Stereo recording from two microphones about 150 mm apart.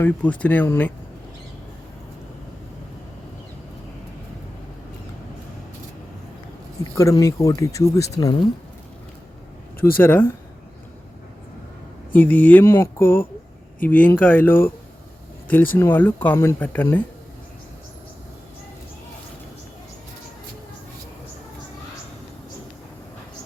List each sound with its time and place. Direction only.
0.0 s speech: 10° left (ahead or behind)
6.9 s speech: 20° left (ahead or behind)
10.0 s speech: 15° left (ahead or behind)
12.1 s speech: 10° left (ahead or behind)